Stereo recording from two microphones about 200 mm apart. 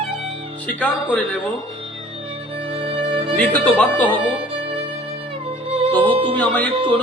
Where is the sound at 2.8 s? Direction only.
25° right (ahead or behind).